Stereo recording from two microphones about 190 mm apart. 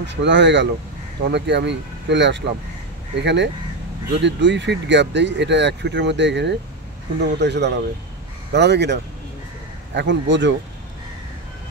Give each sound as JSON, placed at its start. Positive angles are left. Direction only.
{"t": 0.0, "sound": "speech", "side_deg": -70}